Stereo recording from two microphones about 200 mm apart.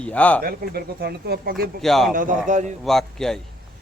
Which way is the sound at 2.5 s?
35° right (ahead or behind).